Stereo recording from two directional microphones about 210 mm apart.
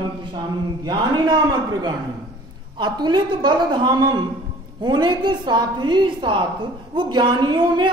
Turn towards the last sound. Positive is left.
turn(degrees=-20)  # may be behind; listen again after turning